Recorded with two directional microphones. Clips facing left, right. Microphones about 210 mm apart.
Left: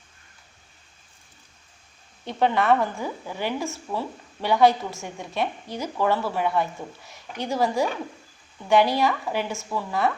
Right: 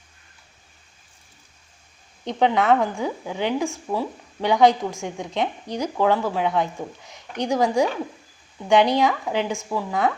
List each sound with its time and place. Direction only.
2.2 s a woman's voice: 20° right (ahead or behind)